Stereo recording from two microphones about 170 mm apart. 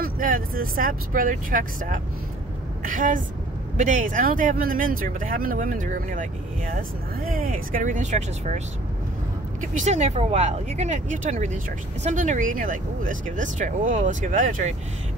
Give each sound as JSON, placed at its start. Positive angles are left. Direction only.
{"t": 0.0, "sound": "speech", "side_deg": -55}
{"t": 9.6, "sound": "speech", "side_deg": -45}